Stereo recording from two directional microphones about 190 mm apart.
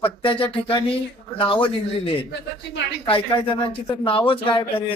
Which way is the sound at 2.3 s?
65° left (ahead or behind).